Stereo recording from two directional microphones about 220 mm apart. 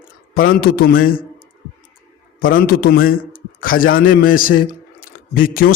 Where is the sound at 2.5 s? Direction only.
40° left (ahead or behind).